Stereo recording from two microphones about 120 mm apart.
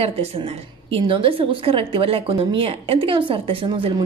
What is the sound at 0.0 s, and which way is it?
A woman's voice, 55° right (ahead or behind).